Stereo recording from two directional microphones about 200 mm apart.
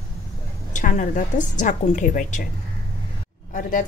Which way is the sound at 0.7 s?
40° left (ahead or behind).